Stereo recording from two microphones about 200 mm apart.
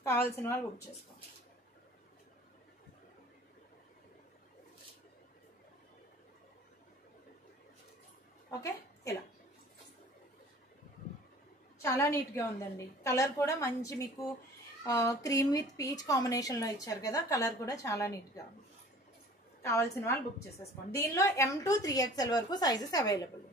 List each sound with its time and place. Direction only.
0.0 s a woman's voice: 10° left (ahead or behind)
8.5 s a sound: 15° left (ahead or behind)
11.8 s a woman's voice: 15° left (ahead or behind)
19.6 s a woman's voice: 10° left (ahead or behind)